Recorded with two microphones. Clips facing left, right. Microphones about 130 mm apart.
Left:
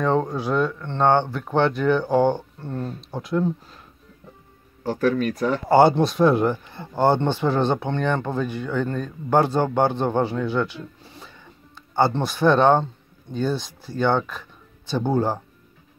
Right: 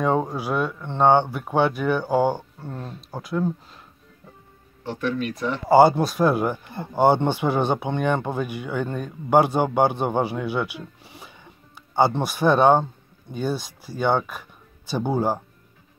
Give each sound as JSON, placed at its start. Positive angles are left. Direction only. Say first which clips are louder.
{"t": 0.0, "sound": "speech", "louder": "left 1 dB", "side_deg": -10}
{"t": 4.8, "sound": "speech", "louder": "left 5 dB", "side_deg": 40}
{"t": 5.7, "sound": "speech", "louder": "right 1 dB", "side_deg": -5}